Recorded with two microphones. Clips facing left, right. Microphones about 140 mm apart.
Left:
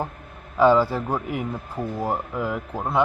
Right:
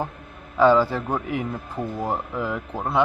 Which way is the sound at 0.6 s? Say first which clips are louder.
Even; 10° left (ahead or behind).